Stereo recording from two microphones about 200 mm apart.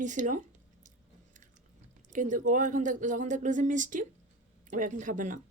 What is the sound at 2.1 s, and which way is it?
Speech, 40° right (ahead or behind).